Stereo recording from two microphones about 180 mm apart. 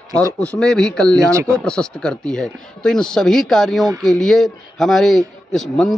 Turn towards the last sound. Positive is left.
turn(degrees=0)  # may be behind; listen again after turning